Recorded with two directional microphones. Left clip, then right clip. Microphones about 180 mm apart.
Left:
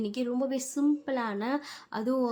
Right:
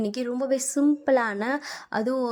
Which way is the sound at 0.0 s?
35° right (ahead or behind).